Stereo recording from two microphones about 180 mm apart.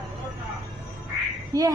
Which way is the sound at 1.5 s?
20° right (ahead or behind).